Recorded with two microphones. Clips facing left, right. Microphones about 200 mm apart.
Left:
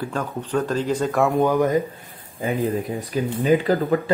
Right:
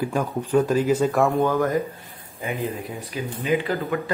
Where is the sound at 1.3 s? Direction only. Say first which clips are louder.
Left 2 dB; 15° left (ahead or behind).